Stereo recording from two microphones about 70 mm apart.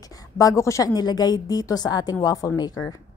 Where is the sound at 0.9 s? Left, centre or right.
Left.